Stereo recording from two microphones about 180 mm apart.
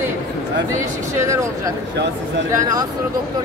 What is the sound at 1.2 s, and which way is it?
Speech, 15° right (ahead or behind).